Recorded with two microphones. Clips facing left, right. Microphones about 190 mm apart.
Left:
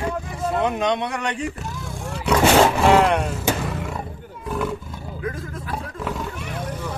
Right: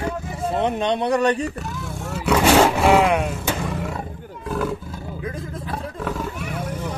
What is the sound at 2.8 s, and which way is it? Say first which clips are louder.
Speech: even; 5° right (ahead or behind).